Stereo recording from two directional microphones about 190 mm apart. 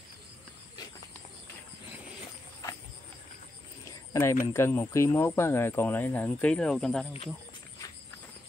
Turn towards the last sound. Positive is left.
turn(degrees=5)  # may be behind; listen again after turning